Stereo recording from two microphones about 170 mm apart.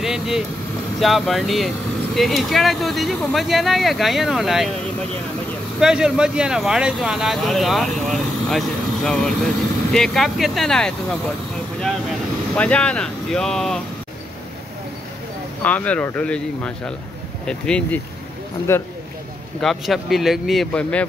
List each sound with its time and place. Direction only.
0.0 s vehicle: 5° right (ahead or behind)
0.9 s speech: centre (ahead or behind)
5.8 s speech: 5° right (ahead or behind)
12.5 s speech: 5° left (ahead or behind)
15.6 s speech: 10° left (ahead or behind)
19.6 s speech: centre (ahead or behind)